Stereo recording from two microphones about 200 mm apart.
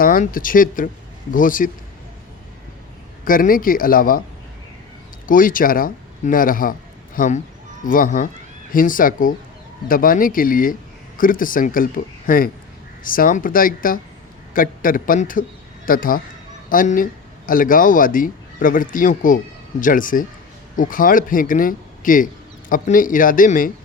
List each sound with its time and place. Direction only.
0.0 s speech: 45° left (ahead or behind)
3.2 s speech: 45° left (ahead or behind)
5.2 s speech: 45° left (ahead or behind)